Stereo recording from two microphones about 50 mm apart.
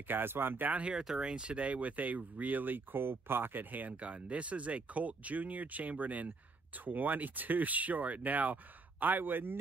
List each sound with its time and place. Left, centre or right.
0.0 s speech: right
0.9 s speech: centre; by 9.6 s right